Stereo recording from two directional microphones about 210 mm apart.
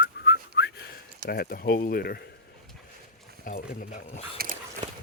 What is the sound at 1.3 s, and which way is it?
Speech, 45° left (ahead or behind).